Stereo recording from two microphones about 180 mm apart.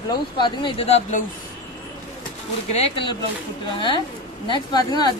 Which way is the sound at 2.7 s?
35° left (ahead or behind).